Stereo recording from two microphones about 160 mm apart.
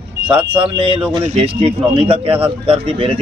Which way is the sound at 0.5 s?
35° right (ahead or behind).